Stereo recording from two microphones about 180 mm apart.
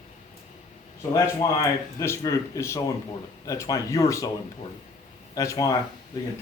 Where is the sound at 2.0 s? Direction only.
15° left (ahead or behind).